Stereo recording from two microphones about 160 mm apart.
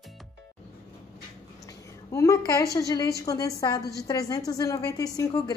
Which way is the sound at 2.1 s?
20° left (ahead or behind).